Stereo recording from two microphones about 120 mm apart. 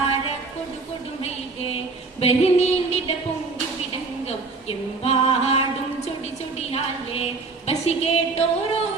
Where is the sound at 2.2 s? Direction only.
60° left (ahead or behind).